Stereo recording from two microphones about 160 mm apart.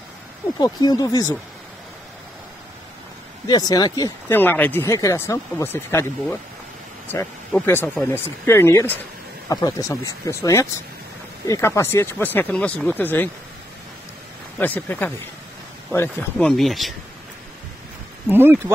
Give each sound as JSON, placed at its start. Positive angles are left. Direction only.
{"t": 0.6, "sound": "speech", "side_deg": 25}
{"t": 3.4, "sound": "speech", "side_deg": 25}
{"t": 4.3, "sound": "speech", "side_deg": 10}
{"t": 7.1, "sound": "speech", "side_deg": 15}
{"t": 14.6, "sound": "speech", "side_deg": 10}
{"t": 16.4, "sound": "speech", "side_deg": 0}
{"t": 18.3, "sound": "speech", "side_deg": -15}